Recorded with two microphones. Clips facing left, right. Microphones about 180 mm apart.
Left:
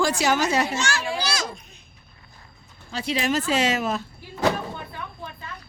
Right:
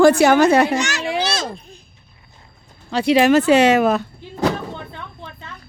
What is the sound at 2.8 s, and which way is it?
Speech, 70° right (ahead or behind).